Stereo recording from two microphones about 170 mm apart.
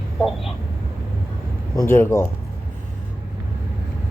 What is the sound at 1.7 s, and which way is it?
Speech, 20° left (ahead or behind).